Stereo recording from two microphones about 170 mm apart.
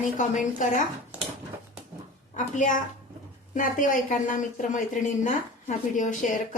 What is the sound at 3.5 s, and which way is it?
Speech, 50° left (ahead or behind).